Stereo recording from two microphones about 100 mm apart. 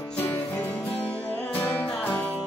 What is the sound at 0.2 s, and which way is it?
Music, 20° left (ahead or behind).